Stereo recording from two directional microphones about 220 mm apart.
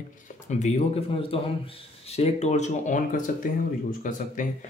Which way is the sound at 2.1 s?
30° left (ahead or behind).